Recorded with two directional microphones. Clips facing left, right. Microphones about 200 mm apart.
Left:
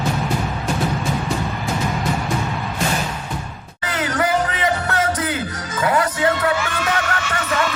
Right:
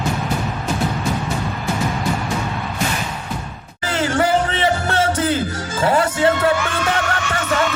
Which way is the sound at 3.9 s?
30° right (ahead or behind).